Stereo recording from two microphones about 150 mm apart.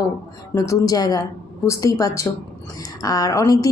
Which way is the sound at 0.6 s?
25° left (ahead or behind).